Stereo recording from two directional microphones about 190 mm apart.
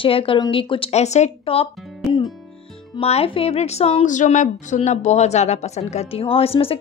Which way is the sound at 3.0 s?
30° left (ahead or behind).